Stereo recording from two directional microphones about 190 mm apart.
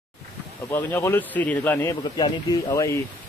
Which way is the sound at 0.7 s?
10° left (ahead or behind).